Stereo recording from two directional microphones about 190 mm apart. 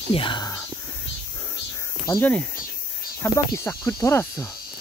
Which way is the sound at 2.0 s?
10° left (ahead or behind).